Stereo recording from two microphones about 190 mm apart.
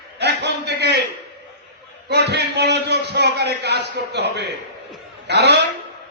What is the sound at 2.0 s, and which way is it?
A man's voice, 60° right (ahead or behind).